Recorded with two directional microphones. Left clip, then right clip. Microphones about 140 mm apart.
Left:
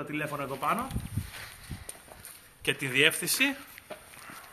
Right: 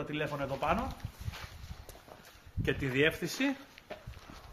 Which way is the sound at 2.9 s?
90° right.